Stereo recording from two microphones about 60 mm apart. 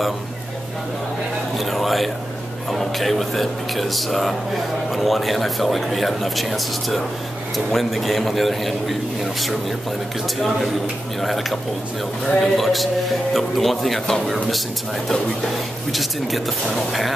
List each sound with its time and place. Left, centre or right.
1.6 s a man's voice: centre
11.1 s a man's voice: centre
15.9 s a man's voice: centre